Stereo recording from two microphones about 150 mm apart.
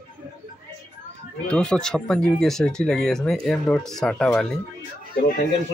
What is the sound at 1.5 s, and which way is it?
Speech, 5° left (ahead or behind).